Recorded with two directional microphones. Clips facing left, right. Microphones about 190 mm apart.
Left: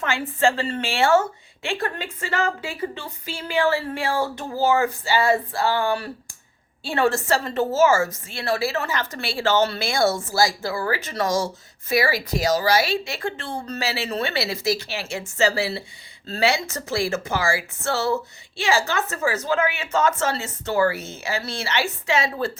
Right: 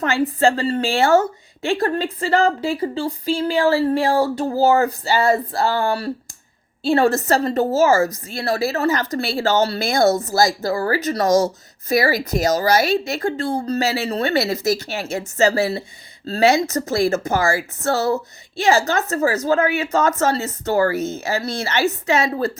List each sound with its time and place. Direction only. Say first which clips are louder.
0.0 s a woman's voice: right 4 dB; 40° right (ahead or behind)